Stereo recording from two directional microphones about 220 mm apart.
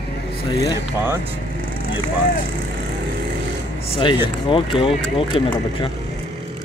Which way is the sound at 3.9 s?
20° left (ahead or behind).